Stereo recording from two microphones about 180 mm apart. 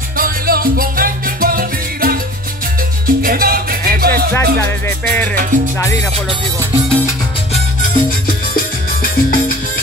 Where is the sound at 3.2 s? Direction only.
55° right (ahead or behind).